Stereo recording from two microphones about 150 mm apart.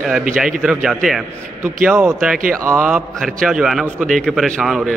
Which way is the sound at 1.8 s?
20° right (ahead or behind).